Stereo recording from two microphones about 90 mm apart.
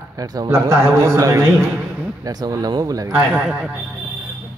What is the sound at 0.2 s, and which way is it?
Speech, 45° right (ahead or behind).